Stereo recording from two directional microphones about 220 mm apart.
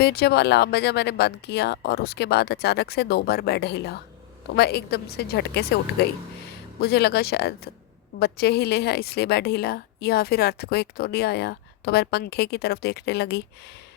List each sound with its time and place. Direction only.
0.0 s a woman's voice: 45° left (ahead or behind)